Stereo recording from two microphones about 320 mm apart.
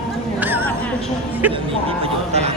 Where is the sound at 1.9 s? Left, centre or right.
Centre.